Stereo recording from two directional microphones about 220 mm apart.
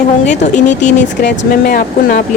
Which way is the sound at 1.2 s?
45° left (ahead or behind).